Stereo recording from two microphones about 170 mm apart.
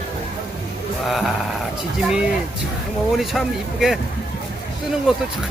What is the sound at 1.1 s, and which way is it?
Speech, centre (ahead or behind).